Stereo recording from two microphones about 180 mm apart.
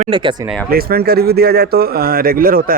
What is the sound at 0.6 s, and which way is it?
Speech, 55° right (ahead or behind).